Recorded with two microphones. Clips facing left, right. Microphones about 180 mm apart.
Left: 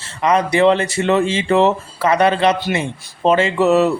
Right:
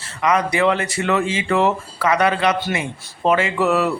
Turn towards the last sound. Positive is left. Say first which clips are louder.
# left 5 dB
turn(degrees=25)  # may be behind; listen again after turning